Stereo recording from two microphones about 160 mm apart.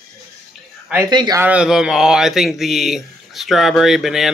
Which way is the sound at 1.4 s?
5° right (ahead or behind).